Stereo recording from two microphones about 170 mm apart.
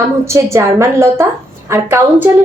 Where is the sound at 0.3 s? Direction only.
15° right (ahead or behind).